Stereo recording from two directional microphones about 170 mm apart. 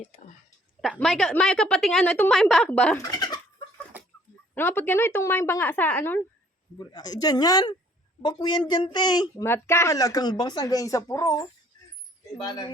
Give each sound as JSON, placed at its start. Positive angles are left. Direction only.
{"t": 0.8, "sound": "a woman's voice", "side_deg": 5}
{"t": 3.0, "sound": "speech", "side_deg": 20}
{"t": 4.5, "sound": "speech", "side_deg": 10}
{"t": 6.7, "sound": "a woman's voice", "side_deg": 25}